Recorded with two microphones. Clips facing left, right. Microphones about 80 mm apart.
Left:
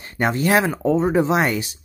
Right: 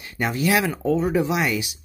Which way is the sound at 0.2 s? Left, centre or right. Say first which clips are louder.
Left 3 dB; left.